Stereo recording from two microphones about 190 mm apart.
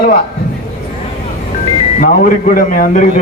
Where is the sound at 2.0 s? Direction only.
45° left (ahead or behind).